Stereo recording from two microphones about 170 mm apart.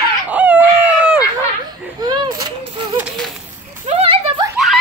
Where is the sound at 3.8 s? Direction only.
35° right (ahead or behind).